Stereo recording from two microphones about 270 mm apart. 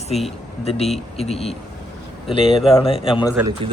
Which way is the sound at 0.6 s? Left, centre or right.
Left.